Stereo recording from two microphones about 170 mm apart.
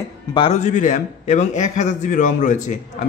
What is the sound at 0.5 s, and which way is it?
A man's voice, 45° left (ahead or behind).